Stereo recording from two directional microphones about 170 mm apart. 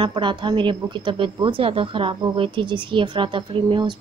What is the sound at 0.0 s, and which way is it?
A woman's voice, 30° right (ahead or behind).